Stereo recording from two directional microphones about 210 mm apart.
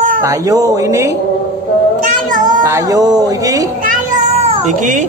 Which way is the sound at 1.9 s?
40° right (ahead or behind).